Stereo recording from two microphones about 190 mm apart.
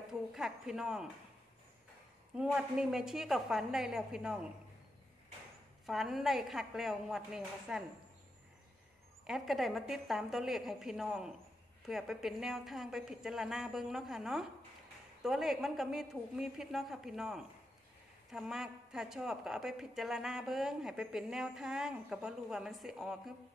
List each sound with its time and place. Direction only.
0.3 s a woman's voice: centre (ahead or behind)
2.3 s a woman's voice: 5° right (ahead or behind)
5.9 s a woman's voice: centre (ahead or behind)
9.2 s a woman's voice: centre (ahead or behind)